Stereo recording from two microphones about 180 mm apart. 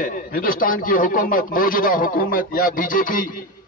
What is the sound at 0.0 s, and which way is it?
A man's voice, 55° left (ahead or behind).